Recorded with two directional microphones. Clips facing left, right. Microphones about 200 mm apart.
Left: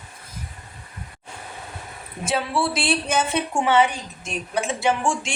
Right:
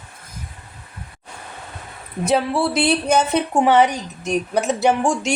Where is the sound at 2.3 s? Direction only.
40° right (ahead or behind).